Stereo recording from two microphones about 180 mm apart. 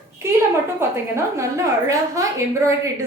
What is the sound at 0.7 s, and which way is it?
A woman's voice, 15° right (ahead or behind).